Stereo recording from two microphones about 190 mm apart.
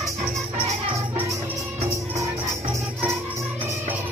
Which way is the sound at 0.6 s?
35° right (ahead or behind).